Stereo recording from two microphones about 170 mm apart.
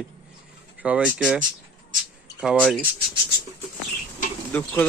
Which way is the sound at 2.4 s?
Centre (ahead or behind).